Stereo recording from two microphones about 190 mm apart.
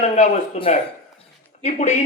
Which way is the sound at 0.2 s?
35° left (ahead or behind).